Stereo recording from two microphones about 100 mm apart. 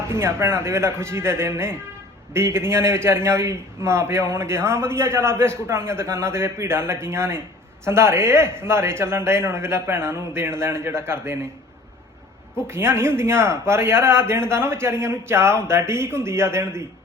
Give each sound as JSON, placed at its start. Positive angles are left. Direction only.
{"t": 0.1, "sound": "a man's voice", "side_deg": -25}
{"t": 12.6, "sound": "a man's voice", "side_deg": -25}